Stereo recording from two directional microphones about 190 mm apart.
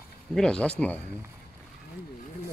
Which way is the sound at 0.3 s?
5° left (ahead or behind).